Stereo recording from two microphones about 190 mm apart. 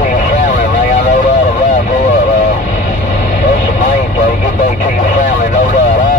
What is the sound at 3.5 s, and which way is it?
Vehicle, 40° left (ahead or behind).